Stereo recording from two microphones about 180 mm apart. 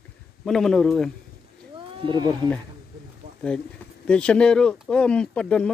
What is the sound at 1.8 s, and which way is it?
Speech, 25° right (ahead or behind).